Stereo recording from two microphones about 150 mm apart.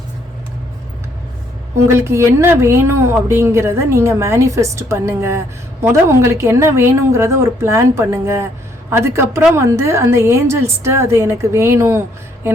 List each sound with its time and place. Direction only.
1.9 s a woman's voice: 15° right (ahead or behind)